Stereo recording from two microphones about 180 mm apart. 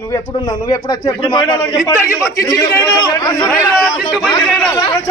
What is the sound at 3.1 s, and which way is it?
Speech, 20° left (ahead or behind).